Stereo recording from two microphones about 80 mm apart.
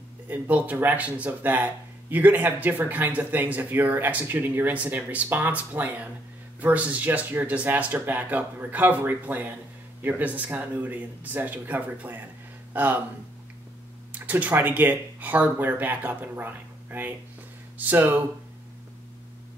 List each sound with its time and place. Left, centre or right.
0.3 s speech: centre
14.1 s speech: centre